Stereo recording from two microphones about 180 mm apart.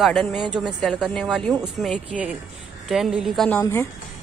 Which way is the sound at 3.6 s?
15° left (ahead or behind).